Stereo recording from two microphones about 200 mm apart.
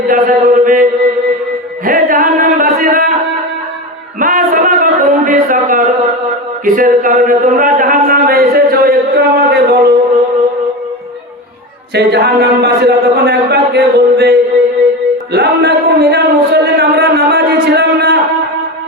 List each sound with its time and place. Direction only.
0.1 s a man's voice: 40° right (ahead or behind)
1.8 s music: 45° right (ahead or behind)
4.2 s a sound: 45° right (ahead or behind)
6.7 s speech: 45° right (ahead or behind)
11.9 s a man's voice: 55° right (ahead or behind)
15.3 s a sound: 55° right (ahead or behind)